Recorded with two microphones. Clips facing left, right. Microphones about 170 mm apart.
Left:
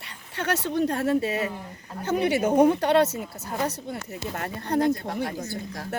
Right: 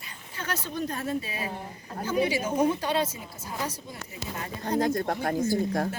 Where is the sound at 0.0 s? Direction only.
75° left (ahead or behind).